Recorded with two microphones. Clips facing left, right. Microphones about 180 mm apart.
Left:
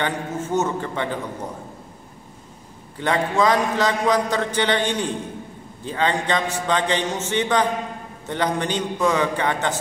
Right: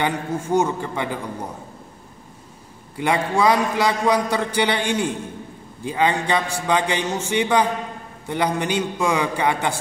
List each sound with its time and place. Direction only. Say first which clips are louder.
0.0 s a man's voice: right 2 dB; 10° right (ahead or behind)
3.0 s a man's voice: even; 10° right (ahead or behind)